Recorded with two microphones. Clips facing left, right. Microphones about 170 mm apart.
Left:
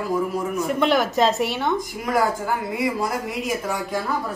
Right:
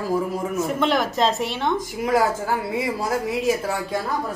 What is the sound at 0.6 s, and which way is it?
Speech, centre (ahead or behind).